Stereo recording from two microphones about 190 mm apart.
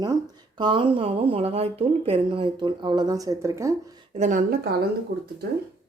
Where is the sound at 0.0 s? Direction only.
20° right (ahead or behind).